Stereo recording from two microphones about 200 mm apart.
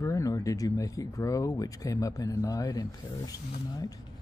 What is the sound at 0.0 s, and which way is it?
Speech, 15° left (ahead or behind).